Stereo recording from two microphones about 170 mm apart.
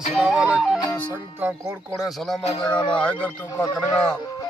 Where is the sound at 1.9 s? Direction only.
Centre (ahead or behind).